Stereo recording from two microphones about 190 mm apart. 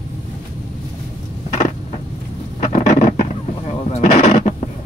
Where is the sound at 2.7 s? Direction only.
40° left (ahead or behind).